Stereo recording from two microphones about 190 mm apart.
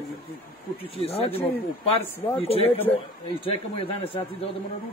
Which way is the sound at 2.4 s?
30° left (ahead or behind).